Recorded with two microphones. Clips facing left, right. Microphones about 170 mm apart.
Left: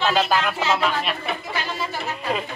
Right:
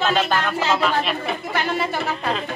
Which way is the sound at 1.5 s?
60° right (ahead or behind).